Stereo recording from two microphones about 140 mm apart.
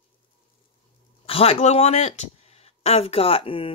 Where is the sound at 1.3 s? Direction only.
45° left (ahead or behind).